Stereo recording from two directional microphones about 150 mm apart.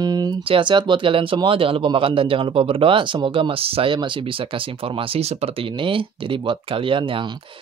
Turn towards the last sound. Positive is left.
turn(degrees=-35)  # may be behind; listen again after turning